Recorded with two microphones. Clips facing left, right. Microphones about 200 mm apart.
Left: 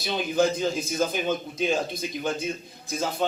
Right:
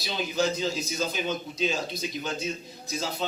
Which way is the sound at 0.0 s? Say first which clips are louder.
Left 4 dB; 55° left (ahead or behind).